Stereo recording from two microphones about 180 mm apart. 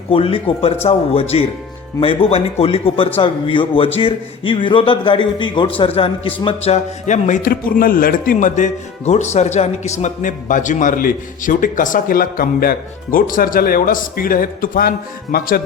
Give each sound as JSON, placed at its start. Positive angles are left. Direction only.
{"t": 0.1, "sound": "a man's voice", "side_deg": 30}